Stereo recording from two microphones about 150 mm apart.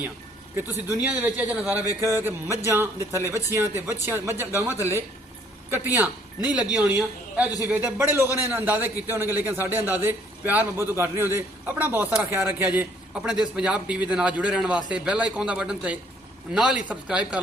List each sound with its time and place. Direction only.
0.5 s a man's voice: 10° right (ahead or behind)